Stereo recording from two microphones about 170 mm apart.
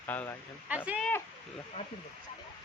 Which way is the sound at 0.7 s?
10° right (ahead or behind).